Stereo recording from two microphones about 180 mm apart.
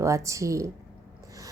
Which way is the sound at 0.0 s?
15° right (ahead or behind).